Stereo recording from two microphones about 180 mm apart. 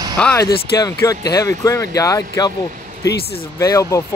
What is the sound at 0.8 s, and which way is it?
Speech, 20° left (ahead or behind).